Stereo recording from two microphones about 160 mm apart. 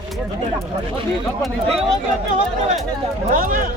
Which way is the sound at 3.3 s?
60° right (ahead or behind).